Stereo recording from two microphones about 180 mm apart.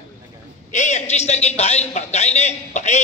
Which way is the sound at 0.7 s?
40° left (ahead or behind).